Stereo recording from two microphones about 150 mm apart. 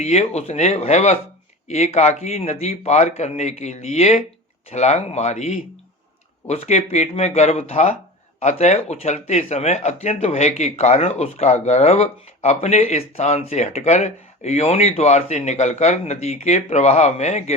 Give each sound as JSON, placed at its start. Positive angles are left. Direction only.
{"t": 0.0, "sound": "speech", "side_deg": 45}